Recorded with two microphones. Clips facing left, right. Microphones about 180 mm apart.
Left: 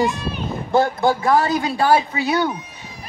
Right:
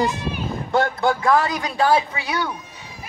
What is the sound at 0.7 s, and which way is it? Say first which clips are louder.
A man's voice: left 3 dB; 25° left (ahead or behind).